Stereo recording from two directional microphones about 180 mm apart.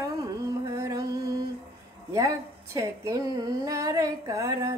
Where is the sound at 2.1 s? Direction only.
20° right (ahead or behind).